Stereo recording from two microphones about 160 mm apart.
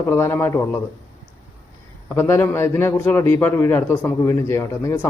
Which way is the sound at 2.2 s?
15° left (ahead or behind).